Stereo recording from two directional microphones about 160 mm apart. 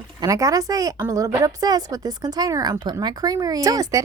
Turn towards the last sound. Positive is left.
turn(degrees=-20)  # may be behind; listen again after turning